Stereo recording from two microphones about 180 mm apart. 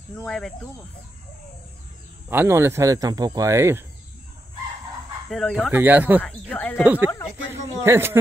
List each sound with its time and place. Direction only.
0.2 s speech: 5° left (ahead or behind)
2.2 s speech: 15° right (ahead or behind)
5.3 s speech: centre (ahead or behind)
6.5 s speech: 10° left (ahead or behind)
6.8 s speech: 10° right (ahead or behind)